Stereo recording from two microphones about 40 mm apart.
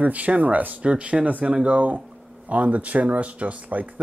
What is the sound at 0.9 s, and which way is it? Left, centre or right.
Speech, right.